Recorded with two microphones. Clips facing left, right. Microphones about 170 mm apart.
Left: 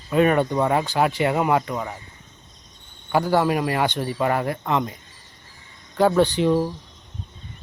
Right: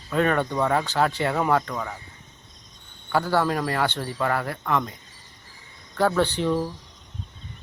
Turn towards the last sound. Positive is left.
turn(degrees=20)  # may be behind; listen again after turning